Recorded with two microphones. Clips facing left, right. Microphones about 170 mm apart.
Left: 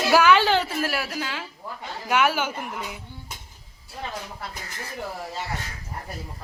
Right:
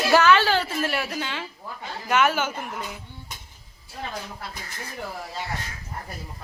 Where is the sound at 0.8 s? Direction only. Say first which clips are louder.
Right 1 dB; 5° left (ahead or behind).